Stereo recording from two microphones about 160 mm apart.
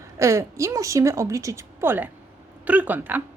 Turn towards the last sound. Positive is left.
turn(degrees=-10)  # may be behind; listen again after turning